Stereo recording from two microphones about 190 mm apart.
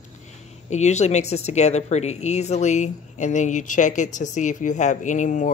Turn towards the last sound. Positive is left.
turn(degrees=40)  # may be behind; listen again after turning